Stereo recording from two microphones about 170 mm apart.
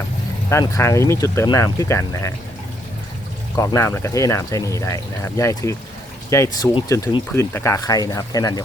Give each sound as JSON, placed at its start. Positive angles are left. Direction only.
{"t": 0.6, "sound": "speech", "side_deg": 20}
{"t": 3.5, "sound": "speech", "side_deg": 20}